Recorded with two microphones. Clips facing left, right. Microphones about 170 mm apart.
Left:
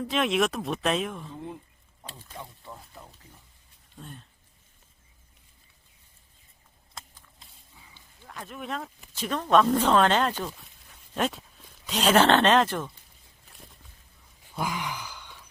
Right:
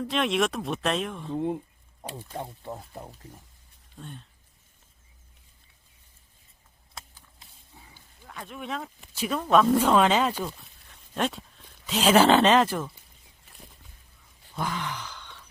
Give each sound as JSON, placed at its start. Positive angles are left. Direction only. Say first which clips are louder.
{"t": 0.0, "sound": "speech", "louder": "even", "side_deg": 0}
{"t": 1.4, "sound": "speech", "louder": "right 10 dB", "side_deg": -55}
{"t": 3.9, "sound": "speech", "louder": "right 2 dB", "side_deg": 0}
{"t": 8.2, "sound": "speech", "louder": "even", "side_deg": 0}
{"t": 14.5, "sound": "gasp", "louder": "even", "side_deg": 10}